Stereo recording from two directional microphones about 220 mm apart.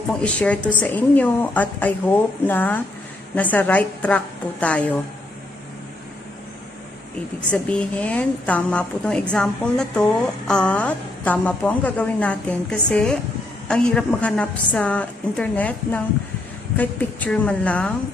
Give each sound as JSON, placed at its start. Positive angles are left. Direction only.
{"t": 0.1, "sound": "a woman's voice", "side_deg": 5}
{"t": 7.5, "sound": "a woman's voice", "side_deg": 5}